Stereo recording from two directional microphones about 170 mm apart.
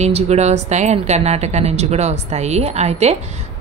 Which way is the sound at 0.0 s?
40° right (ahead or behind).